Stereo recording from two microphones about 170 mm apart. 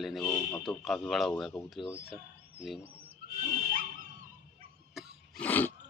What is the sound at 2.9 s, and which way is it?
Neigh, 35° right (ahead or behind).